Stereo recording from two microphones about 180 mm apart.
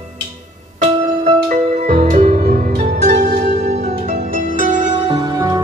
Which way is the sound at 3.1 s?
65° right (ahead or behind).